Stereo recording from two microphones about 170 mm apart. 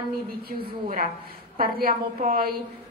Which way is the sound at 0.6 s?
50° right (ahead or behind).